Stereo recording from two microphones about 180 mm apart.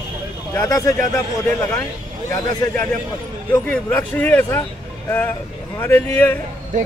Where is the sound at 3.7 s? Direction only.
10° left (ahead or behind).